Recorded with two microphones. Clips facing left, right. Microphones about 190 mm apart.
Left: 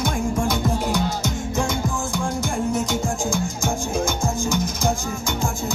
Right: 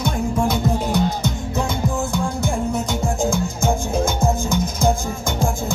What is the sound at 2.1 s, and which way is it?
Music, 55° right (ahead or behind).